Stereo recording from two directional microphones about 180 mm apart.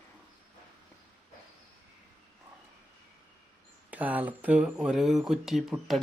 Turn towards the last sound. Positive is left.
turn(degrees=0)  # may be behind; listen again after turning